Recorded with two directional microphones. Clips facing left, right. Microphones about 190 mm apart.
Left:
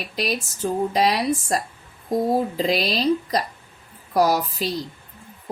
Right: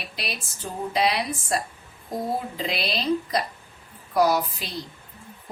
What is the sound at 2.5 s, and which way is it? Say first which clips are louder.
Speech: left 6 dB; 40° left (ahead or behind).